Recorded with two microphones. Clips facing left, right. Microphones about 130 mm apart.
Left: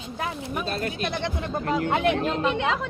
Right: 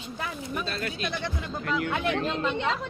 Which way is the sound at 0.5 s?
45° left (ahead or behind).